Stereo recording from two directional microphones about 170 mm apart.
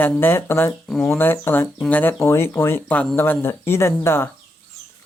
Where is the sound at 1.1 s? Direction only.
10° left (ahead or behind).